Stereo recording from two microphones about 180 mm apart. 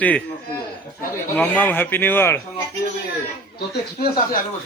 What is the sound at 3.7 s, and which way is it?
Speech, 60° left (ahead or behind).